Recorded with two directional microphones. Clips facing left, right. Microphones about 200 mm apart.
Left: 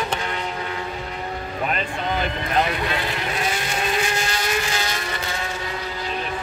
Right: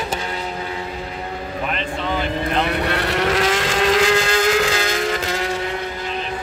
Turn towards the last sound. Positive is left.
turn(degrees=-90)